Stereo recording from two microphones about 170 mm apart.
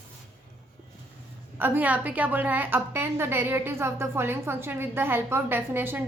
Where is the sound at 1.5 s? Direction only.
10° right (ahead or behind).